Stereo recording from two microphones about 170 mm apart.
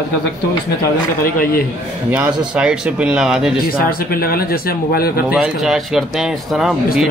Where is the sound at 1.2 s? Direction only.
60° left (ahead or behind).